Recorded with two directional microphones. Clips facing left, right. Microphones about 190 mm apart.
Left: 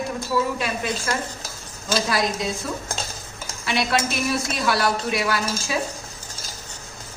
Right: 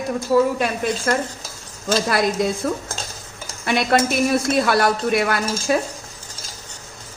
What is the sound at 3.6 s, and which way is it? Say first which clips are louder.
A woman's voice: right 5 dB; 50° right (ahead or behind).